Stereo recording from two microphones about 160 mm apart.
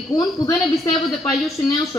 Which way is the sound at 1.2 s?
Centre (ahead or behind).